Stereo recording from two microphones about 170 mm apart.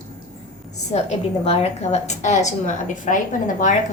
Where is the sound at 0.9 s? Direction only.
40° left (ahead or behind).